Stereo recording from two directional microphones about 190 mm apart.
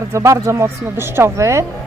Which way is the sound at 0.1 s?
15° right (ahead or behind).